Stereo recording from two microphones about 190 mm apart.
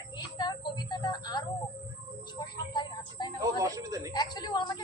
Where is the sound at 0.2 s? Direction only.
20° left (ahead or behind).